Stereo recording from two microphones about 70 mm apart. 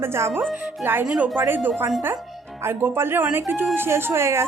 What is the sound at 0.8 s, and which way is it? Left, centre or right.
Speech, right.